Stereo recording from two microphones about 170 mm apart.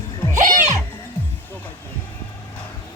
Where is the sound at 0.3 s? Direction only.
45° right (ahead or behind).